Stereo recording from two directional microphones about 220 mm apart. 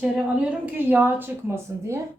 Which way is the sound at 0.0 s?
5° right (ahead or behind).